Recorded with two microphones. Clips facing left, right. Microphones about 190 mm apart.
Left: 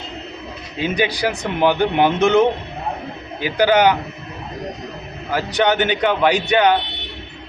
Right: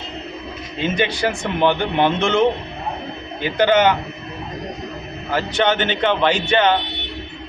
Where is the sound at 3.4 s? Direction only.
10° left (ahead or behind).